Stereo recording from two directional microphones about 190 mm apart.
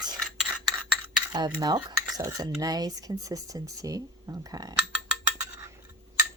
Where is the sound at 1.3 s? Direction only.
20° right (ahead or behind).